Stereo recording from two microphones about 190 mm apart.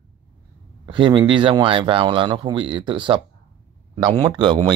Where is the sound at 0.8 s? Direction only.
25° right (ahead or behind).